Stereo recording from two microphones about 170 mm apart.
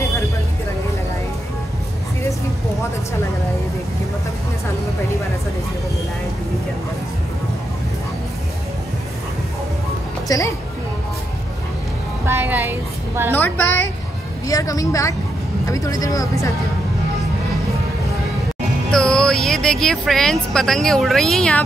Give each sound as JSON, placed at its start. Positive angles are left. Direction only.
{"t": 10.2, "sound": "music", "side_deg": 20}
{"t": 12.3, "sound": "music", "side_deg": -10}
{"t": 13.3, "sound": "a sound", "side_deg": 10}
{"t": 15.6, "sound": "speech", "side_deg": 20}
{"t": 18.9, "sound": "speech", "side_deg": 5}